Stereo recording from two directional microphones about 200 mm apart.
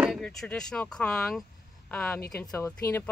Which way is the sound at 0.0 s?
Centre (ahead or behind).